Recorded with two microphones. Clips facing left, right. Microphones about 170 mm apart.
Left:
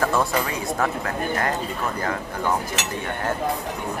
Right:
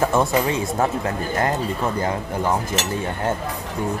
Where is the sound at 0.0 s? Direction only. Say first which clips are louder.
Right 3 dB; 20° right (ahead or behind).